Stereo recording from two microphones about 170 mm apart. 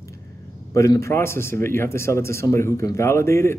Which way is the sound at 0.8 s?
15° left (ahead or behind).